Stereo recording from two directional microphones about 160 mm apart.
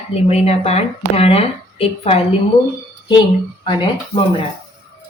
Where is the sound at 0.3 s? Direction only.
40° left (ahead or behind).